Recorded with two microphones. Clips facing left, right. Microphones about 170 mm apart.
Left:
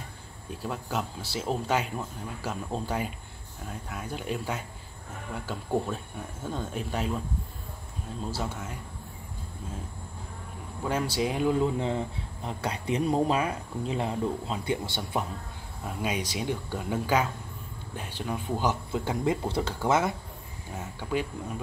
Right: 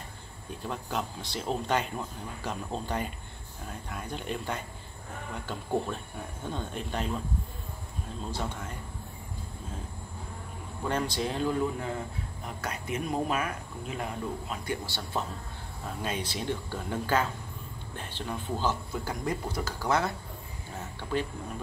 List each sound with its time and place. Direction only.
0.7 s speech: 5° left (ahead or behind)
8.3 s speech: 10° left (ahead or behind)
10.8 s speech: 5° left (ahead or behind)
11.6 s speech: 25° left (ahead or behind)
18.7 s speech: 25° left (ahead or behind)
20.7 s speech: 10° left (ahead or behind)